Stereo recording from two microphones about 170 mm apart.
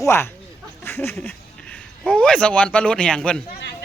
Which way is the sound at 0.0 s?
15° left (ahead or behind).